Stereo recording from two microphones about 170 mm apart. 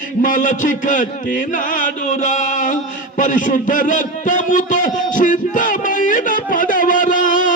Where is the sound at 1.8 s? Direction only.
45° left (ahead or behind).